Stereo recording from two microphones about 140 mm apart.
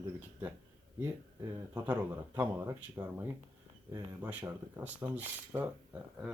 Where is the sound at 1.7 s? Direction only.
15° right (ahead or behind).